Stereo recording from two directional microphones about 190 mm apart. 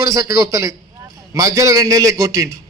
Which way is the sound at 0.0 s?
15° right (ahead or behind).